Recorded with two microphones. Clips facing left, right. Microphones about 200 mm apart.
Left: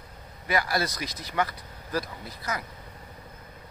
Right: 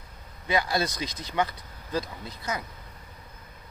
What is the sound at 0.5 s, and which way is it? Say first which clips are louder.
Speech: right 1 dB; 20° right (ahead or behind).